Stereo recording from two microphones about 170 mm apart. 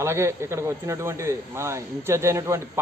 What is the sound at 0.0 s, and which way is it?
Speech, 15° right (ahead or behind).